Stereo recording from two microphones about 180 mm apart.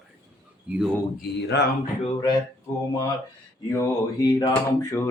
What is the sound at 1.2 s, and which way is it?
Speech, 70° left (ahead or behind).